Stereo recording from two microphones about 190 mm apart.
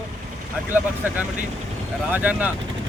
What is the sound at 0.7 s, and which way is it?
Speech, 10° right (ahead or behind).